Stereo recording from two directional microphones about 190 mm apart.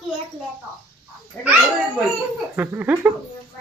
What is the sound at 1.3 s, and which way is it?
Speech, 10° left (ahead or behind).